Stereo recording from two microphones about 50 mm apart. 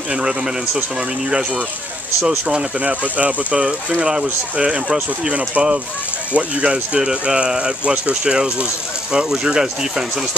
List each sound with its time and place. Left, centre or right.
0.1 s speech: centre
2.2 s speech: right
4.0 s speech: centre